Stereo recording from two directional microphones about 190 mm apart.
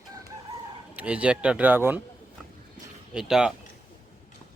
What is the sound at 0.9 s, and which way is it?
Speech, 5° right (ahead or behind).